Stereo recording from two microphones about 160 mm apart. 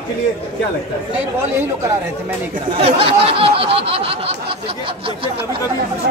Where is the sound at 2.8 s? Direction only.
35° right (ahead or behind).